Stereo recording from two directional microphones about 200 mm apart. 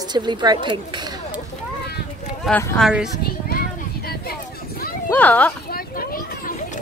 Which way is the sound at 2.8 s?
Centre (ahead or behind).